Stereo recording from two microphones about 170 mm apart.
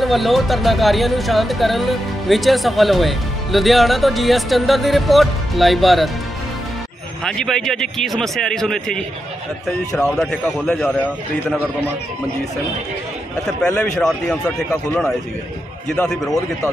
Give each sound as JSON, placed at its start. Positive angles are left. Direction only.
{"t": 0.0, "sound": "speech", "side_deg": 0}
{"t": 7.2, "sound": "speech", "side_deg": 5}
{"t": 13.5, "sound": "speech", "side_deg": 5}